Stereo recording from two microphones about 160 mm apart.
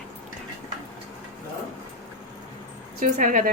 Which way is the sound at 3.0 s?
55° right (ahead or behind).